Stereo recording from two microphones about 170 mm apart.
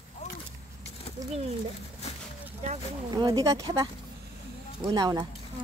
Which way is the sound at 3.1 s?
25° right (ahead or behind).